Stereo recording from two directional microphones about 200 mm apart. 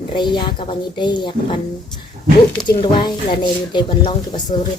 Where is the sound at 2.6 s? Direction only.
25° left (ahead or behind).